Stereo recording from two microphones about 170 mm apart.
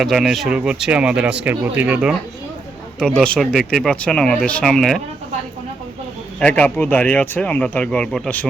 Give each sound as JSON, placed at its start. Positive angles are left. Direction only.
{"t": 0.0, "sound": "speech", "side_deg": 0}
{"t": 3.0, "sound": "speech", "side_deg": 5}
{"t": 6.4, "sound": "speech", "side_deg": 10}